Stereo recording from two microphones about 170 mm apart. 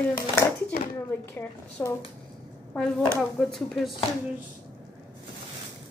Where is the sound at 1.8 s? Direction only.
10° left (ahead or behind).